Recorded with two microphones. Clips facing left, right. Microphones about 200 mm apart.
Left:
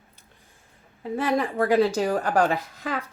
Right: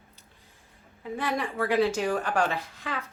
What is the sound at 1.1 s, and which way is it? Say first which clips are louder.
A woman's voice: left 6 dB; 40° left (ahead or behind).